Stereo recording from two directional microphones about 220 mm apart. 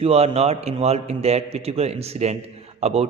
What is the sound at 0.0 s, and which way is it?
A man's voice, 30° right (ahead or behind).